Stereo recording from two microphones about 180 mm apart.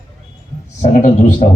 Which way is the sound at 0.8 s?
45° left (ahead or behind).